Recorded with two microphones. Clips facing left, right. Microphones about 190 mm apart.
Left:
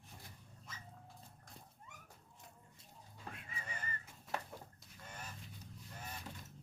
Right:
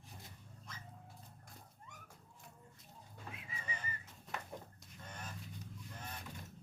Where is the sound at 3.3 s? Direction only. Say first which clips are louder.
Right 1 dB; centre (ahead or behind).